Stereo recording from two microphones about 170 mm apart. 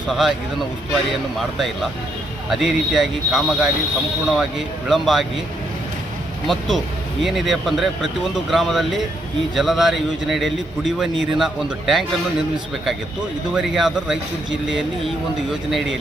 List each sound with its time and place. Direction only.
0.1 s a man's voice: centre (ahead or behind)
1.5 s a man's voice: centre (ahead or behind)
6.5 s a man's voice: centre (ahead or behind)
13.5 s a man's voice: 5° right (ahead or behind)